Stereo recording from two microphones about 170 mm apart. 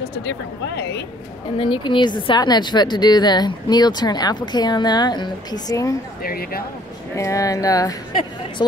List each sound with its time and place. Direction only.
0.0 s speech: 80° left
1.6 s a woman's voice: 30° left (ahead or behind)
6.2 s speech: 60° left (ahead or behind)
7.2 s a woman's voice: 20° left (ahead or behind)